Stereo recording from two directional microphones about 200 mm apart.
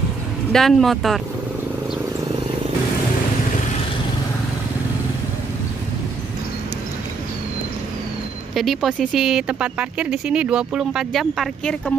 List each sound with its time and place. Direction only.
0.5 s speech: centre (ahead or behind)
8.5 s speech: centre (ahead or behind)